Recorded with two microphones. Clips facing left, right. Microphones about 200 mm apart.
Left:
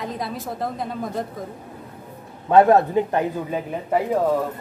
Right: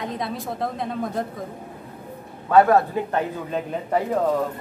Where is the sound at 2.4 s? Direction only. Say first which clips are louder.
Left 2 dB; 25° left (ahead or behind).